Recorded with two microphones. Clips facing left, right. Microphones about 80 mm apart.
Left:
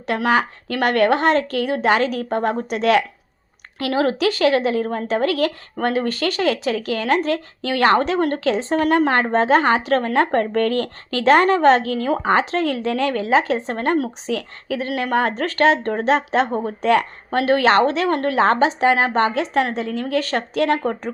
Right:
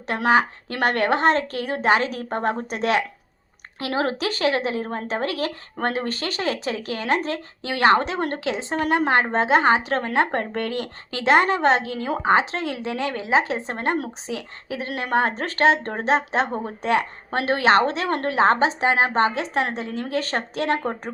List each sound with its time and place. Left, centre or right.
0.1 s a woman's voice: right